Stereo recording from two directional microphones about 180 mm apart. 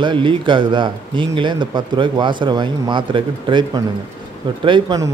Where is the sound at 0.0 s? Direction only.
25° right (ahead or behind).